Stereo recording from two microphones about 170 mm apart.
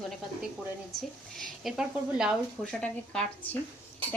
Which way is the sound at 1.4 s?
Centre (ahead or behind).